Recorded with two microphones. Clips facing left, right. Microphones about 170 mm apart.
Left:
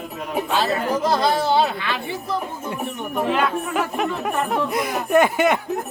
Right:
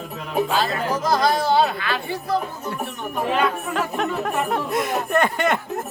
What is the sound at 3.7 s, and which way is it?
Speech, 5° left (ahead or behind).